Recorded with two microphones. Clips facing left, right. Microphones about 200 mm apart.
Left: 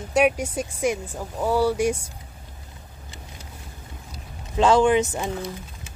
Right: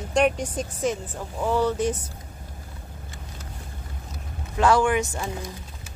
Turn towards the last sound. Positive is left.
turn(degrees=20)  # may be behind; listen again after turning